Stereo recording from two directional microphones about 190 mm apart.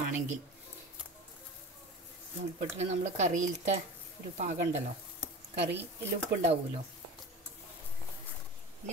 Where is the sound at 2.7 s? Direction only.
35° right (ahead or behind).